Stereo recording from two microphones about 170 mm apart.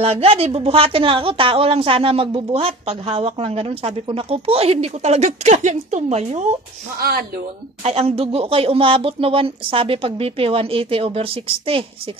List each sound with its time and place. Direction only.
0.0 s speech: 35° right (ahead or behind)
7.0 s speech: 65° right (ahead or behind)
7.8 s speech: 35° right (ahead or behind)